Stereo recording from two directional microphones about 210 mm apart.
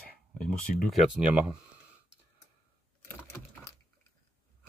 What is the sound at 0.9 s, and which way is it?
Speech, 5° right (ahead or behind).